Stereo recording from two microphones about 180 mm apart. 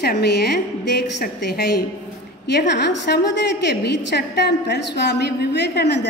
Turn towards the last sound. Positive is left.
turn(degrees=70)  # may be behind; listen again after turning